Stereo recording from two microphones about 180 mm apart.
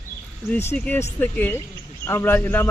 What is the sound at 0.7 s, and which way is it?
Speech, 15° left (ahead or behind).